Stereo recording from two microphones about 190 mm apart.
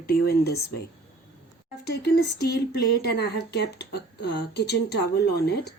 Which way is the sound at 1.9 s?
60° left (ahead or behind).